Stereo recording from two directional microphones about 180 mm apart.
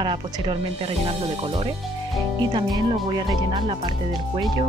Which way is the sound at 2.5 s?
25° right (ahead or behind).